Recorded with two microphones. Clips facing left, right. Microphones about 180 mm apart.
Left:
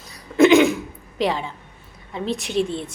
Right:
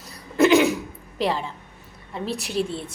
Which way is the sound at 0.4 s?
35° right (ahead or behind).